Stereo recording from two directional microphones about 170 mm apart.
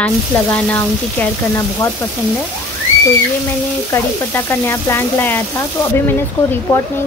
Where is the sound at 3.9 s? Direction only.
15° left (ahead or behind).